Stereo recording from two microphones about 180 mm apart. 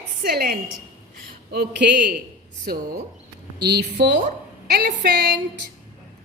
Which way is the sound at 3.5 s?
65° right (ahead or behind).